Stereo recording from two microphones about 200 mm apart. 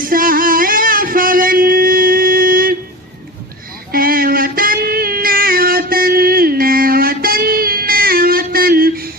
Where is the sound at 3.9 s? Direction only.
45° right (ahead or behind).